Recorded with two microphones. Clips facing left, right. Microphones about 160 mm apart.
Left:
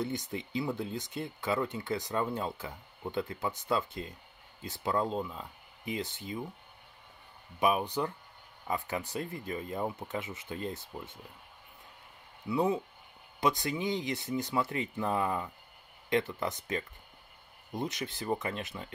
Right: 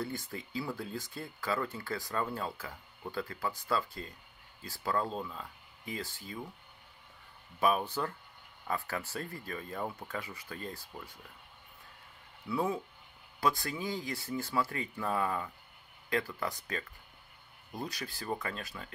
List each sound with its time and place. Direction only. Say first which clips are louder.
0.0 s speech: left 4 dB; 20° left (ahead or behind)
7.6 s speech: left 1 dB; 15° left (ahead or behind)
12.4 s speech: left 4 dB; 20° left (ahead or behind)